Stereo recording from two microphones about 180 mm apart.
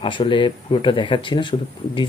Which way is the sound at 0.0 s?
25° left (ahead or behind).